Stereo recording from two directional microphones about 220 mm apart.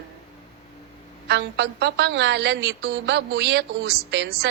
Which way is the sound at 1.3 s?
50° right (ahead or behind).